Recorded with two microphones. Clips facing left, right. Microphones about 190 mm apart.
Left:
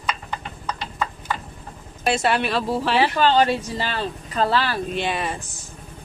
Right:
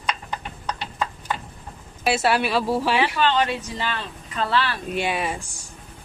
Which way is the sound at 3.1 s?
35° left (ahead or behind).